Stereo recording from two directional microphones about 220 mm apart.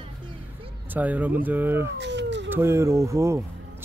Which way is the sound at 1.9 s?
55° right (ahead or behind).